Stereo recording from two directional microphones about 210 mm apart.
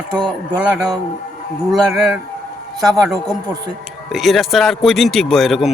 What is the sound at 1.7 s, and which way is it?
Speech, centre (ahead or behind).